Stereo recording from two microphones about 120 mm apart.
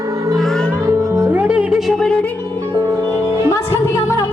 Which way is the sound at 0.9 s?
25° right (ahead or behind).